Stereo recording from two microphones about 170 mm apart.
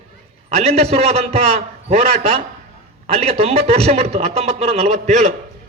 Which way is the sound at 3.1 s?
35° right (ahead or behind).